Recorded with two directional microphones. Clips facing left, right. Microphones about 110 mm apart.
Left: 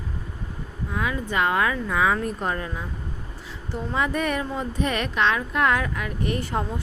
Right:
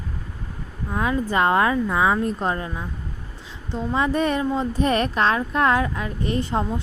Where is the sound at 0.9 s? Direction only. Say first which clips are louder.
Right 4 dB; 35° right (ahead or behind).